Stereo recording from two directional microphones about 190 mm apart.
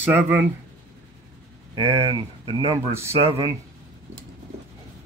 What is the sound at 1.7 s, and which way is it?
Speech, 20° right (ahead or behind).